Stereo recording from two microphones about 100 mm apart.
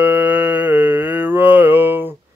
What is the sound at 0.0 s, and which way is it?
Mantra, 15° right (ahead or behind).